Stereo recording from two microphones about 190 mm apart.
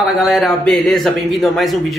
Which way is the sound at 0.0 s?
Centre (ahead or behind).